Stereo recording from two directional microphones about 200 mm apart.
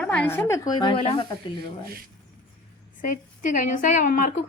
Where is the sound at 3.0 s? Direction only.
40° left (ahead or behind).